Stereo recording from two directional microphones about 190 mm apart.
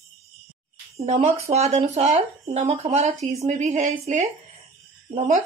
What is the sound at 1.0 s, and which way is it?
Speech, 35° right (ahead or behind).